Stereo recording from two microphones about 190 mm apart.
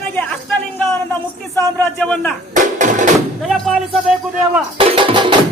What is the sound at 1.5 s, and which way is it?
Speech, 10° left (ahead or behind).